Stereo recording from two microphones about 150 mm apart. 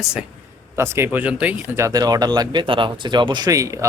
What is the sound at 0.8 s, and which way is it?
Speech, 15° right (ahead or behind).